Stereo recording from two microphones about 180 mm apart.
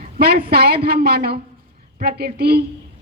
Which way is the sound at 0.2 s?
60° right (ahead or behind).